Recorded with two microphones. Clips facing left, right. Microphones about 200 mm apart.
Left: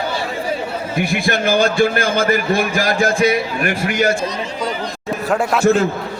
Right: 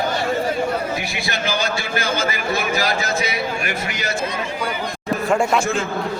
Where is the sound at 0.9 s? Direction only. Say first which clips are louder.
Left 7 dB; 55° left (ahead or behind).